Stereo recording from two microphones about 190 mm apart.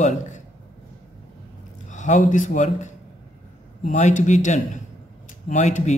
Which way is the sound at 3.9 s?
40° left (ahead or behind).